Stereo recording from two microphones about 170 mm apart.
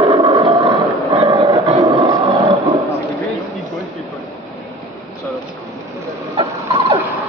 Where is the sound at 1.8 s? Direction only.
20° right (ahead or behind).